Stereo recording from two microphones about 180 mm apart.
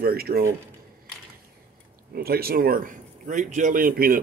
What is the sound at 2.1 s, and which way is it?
A man's voice, 60° right (ahead or behind).